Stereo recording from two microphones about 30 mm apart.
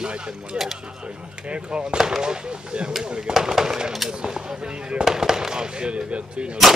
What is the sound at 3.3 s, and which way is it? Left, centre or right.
Speech, centre.